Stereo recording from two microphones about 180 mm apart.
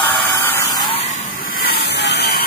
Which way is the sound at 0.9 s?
40° left (ahead or behind).